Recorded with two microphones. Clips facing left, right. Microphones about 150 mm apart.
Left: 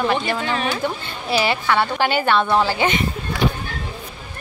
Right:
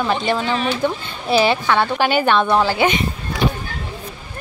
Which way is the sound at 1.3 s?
20° right (ahead or behind).